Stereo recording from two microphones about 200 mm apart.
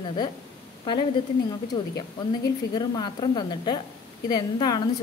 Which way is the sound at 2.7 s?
20° left (ahead or behind).